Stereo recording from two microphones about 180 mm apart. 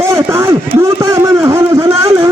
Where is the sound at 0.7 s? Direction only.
15° right (ahead or behind).